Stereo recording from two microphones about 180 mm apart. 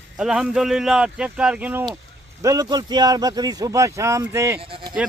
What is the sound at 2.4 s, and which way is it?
A man's voice, 20° right (ahead or behind).